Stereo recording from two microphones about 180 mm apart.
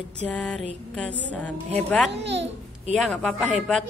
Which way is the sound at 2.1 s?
75° right (ahead or behind).